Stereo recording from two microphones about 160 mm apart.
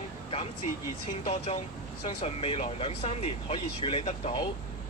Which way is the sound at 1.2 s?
35° left (ahead or behind).